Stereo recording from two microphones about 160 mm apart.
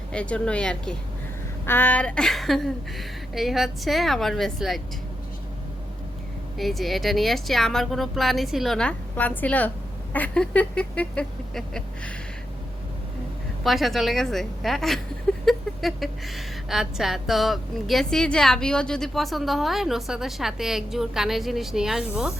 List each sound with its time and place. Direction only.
0.1 s a woman's voice: 5° left (ahead or behind)
6.6 s a woman's voice: centre (ahead or behind)
13.7 s a woman's voice: centre (ahead or behind)